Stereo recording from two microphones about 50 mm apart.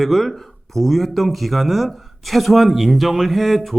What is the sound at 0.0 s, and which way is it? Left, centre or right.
Speech, centre.